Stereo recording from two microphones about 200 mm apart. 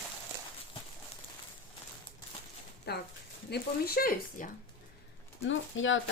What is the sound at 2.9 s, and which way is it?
Speech, 55° left (ahead or behind).